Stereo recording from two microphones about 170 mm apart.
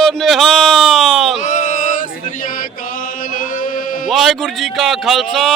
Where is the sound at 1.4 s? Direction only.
45° left (ahead or behind).